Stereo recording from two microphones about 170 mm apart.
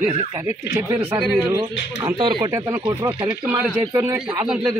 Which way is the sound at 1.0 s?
35° right (ahead or behind).